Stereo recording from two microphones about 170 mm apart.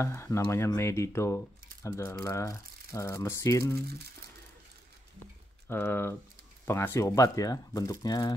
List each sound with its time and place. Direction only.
0.0 s speech: 15° left (ahead or behind)
5.7 s speech: 10° left (ahead or behind)